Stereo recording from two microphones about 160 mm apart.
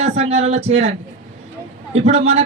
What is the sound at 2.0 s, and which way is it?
Speech, 40° right (ahead or behind).